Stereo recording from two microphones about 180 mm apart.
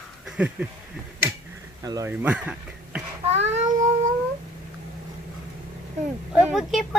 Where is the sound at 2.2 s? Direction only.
5° right (ahead or behind).